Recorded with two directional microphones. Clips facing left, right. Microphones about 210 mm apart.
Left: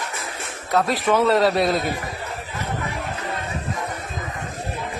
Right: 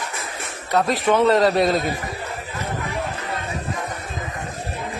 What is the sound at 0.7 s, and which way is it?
A man's voice, centre (ahead or behind).